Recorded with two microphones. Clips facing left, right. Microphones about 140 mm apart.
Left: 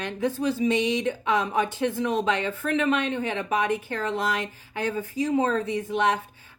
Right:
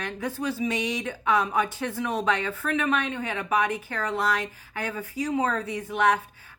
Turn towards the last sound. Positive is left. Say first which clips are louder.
# even
turn(degrees=25)  # may be behind; listen again after turning